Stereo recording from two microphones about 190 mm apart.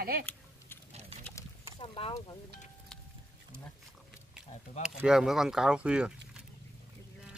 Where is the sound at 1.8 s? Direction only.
30° left (ahead or behind).